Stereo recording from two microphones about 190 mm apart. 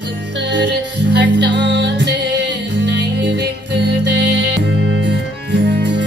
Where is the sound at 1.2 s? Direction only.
70° right (ahead or behind).